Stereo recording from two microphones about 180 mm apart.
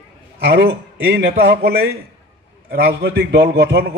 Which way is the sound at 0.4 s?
70° right (ahead or behind).